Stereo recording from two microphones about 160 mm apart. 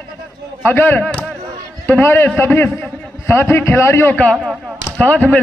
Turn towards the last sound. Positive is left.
turn(degrees=10)  # may be behind; listen again after turning